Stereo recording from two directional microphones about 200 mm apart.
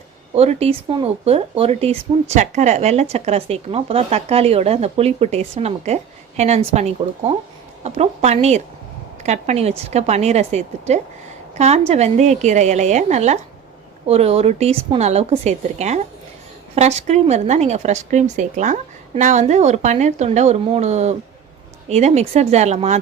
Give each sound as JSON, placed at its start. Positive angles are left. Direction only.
{"t": 0.3, "sound": "speech", "side_deg": -30}